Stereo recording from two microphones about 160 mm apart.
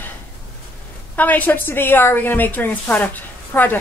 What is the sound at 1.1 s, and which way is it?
A woman's voice, 10° left (ahead or behind).